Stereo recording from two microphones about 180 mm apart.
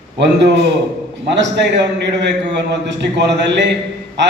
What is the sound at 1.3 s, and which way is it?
A man's voice, 75° right (ahead or behind).